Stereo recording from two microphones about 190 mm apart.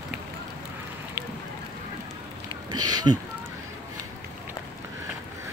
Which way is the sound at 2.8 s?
20° right (ahead or behind).